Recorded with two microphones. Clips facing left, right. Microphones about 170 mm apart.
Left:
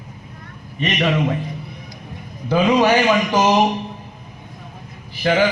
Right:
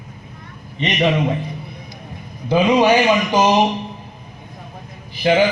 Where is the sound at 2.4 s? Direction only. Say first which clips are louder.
Right 1 dB; 15° right (ahead or behind).